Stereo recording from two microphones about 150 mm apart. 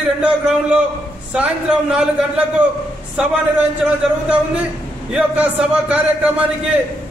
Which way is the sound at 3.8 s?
5° right (ahead or behind).